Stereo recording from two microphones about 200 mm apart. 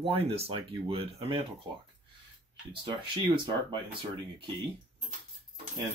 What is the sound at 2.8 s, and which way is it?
Speech, 25° right (ahead or behind).